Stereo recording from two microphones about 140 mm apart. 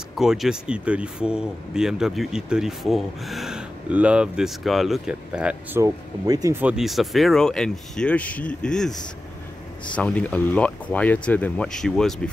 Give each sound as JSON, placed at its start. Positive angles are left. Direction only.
{"t": 0.1, "sound": "speech", "side_deg": 0}
{"t": 5.8, "sound": "speech", "side_deg": -25}
{"t": 6.5, "sound": "speech", "side_deg": -10}